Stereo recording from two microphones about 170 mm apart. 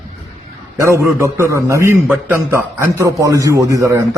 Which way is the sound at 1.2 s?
15° right (ahead or behind).